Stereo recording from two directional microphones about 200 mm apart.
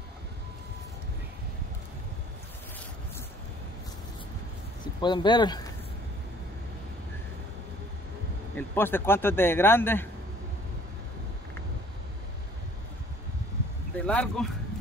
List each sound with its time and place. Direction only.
5.0 s speech: 20° left (ahead or behind)
8.5 s speech: 10° left (ahead or behind)
13.9 s speech: 5° left (ahead or behind)